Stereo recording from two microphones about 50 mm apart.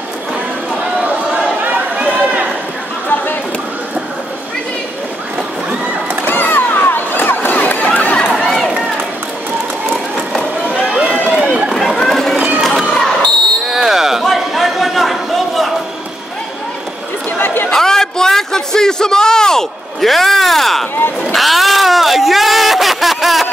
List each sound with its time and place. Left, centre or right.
1.6 s chatter: right
2.2 s run: right
6.2 s a sound: left
8.3 s crowd: centre
10.9 s run: right
11.1 s run: left
11.7 s run: centre
12.9 s crowd: centre
13.7 s a sound: centre
17.6 s a sound: centre